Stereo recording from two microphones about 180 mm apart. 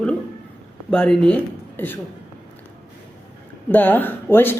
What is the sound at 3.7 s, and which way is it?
Speech, 10° left (ahead or behind).